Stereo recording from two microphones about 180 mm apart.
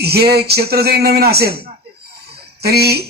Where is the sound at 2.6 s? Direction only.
60° right (ahead or behind).